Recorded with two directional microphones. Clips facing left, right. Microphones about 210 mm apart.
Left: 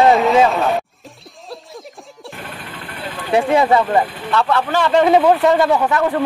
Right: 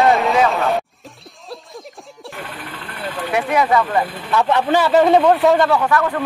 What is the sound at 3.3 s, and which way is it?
Speech, 30° left (ahead or behind).